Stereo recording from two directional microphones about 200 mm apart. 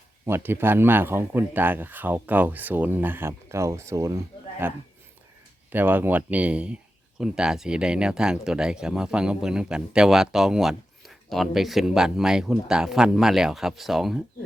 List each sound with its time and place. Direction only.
0.3 s speech: 10° right (ahead or behind)